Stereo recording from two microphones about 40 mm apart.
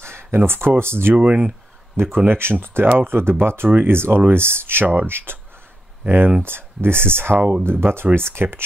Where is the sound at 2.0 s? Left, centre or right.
Right.